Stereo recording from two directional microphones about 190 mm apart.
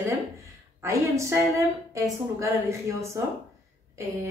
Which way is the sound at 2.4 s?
15° right (ahead or behind).